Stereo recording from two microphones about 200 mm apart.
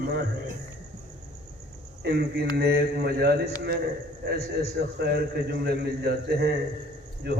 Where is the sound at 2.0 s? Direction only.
50° right (ahead or behind).